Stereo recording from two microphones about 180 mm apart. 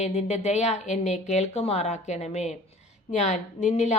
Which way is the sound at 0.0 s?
40° left (ahead or behind).